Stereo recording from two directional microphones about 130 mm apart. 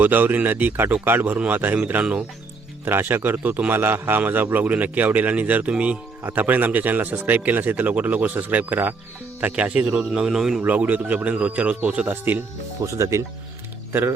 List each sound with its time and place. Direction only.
0.0 s a man's voice: 15° right (ahead or behind)